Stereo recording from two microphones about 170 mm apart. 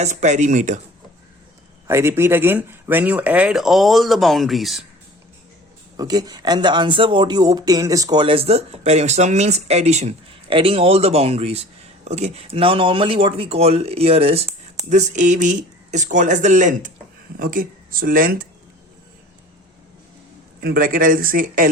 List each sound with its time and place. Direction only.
0.0 s speech: 45° right (ahead or behind)
1.9 s speech: 15° right (ahead or behind)
6.0 s speech: 25° right (ahead or behind); by 18.4 s 55° right (ahead or behind)
20.6 s speech: 60° right (ahead or behind)